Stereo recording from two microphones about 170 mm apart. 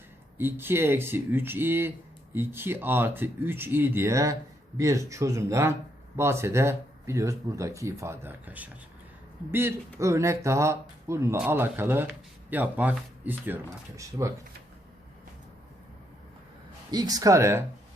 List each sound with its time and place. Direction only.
0.3 s speech: 15° right (ahead or behind)
16.9 s speech: 20° right (ahead or behind)